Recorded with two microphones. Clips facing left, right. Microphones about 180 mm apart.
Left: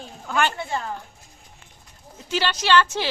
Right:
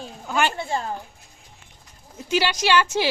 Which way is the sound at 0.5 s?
30° right (ahead or behind).